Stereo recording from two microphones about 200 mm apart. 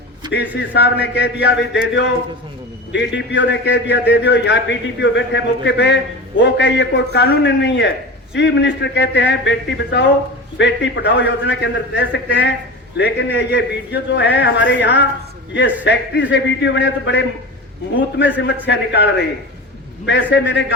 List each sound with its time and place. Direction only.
0.6 s a man's voice: 60° left (ahead or behind)
2.9 s a man's voice: 60° left (ahead or behind)
18.6 s a man's voice: 60° left (ahead or behind)